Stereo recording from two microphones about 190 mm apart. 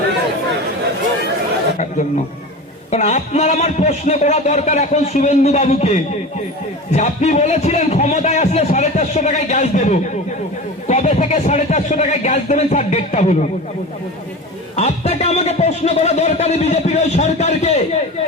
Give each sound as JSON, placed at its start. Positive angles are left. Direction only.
{"t": 2.9, "sound": "speech", "side_deg": 35}
{"t": 14.8, "sound": "speech", "side_deg": 35}